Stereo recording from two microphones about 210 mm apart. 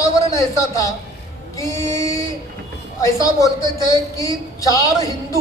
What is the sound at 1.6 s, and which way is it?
A man's voice, 15° left (ahead or behind).